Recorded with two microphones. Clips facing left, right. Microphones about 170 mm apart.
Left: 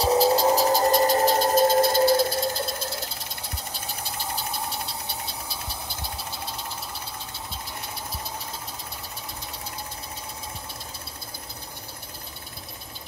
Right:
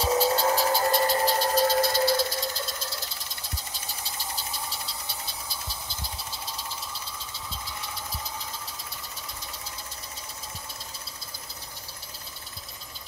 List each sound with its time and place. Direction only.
0.0 s music: 35° left (ahead or behind)
0.6 s a sound: 40° left (ahead or behind)
3.5 s engine: 60° left (ahead or behind)